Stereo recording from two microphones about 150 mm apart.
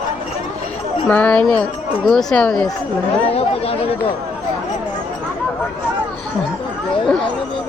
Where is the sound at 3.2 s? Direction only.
40° left (ahead or behind).